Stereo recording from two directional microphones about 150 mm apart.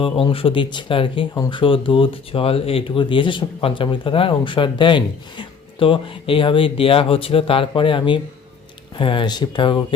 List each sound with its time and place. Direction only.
0.0 s speech: 35° left (ahead or behind)